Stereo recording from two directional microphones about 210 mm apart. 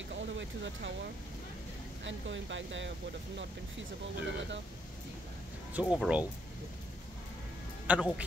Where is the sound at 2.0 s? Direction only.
60° right (ahead or behind).